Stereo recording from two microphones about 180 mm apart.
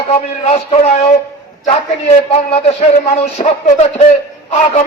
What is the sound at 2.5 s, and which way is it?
A man's voice, 35° left (ahead or behind).